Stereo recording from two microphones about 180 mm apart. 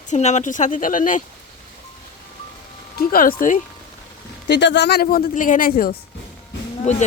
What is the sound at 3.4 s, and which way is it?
Speech, 45° left (ahead or behind).